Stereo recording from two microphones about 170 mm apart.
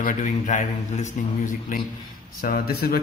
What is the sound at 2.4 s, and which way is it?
Speech, 60° left (ahead or behind).